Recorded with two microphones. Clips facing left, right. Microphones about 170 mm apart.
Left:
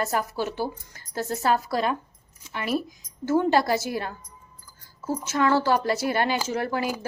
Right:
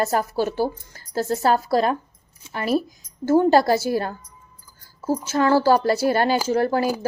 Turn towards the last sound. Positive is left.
turn(degrees=-35)  # may be behind; listen again after turning